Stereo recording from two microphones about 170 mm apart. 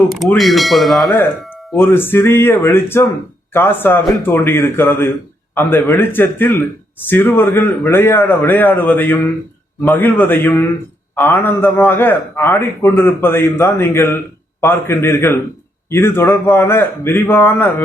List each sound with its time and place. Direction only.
0.1 s speech: centre (ahead or behind)
1.9 s a man's voice: 15° left (ahead or behind)